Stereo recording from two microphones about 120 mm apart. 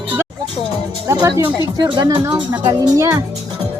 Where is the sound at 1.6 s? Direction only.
30° right (ahead or behind).